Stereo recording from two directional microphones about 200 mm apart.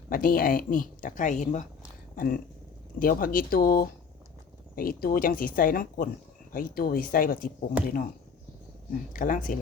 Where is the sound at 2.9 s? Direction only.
45° left (ahead or behind).